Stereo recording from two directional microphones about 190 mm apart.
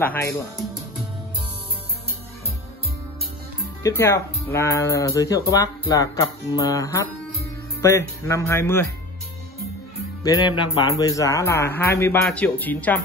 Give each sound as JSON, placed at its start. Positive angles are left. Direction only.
{"t": 0.0, "sound": "speech", "side_deg": 10}
{"t": 3.8, "sound": "speech", "side_deg": 15}
{"t": 8.2, "sound": "speech", "side_deg": 15}
{"t": 10.2, "sound": "speech", "side_deg": 20}